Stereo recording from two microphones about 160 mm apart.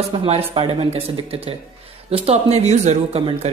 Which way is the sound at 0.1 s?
35° right (ahead or behind).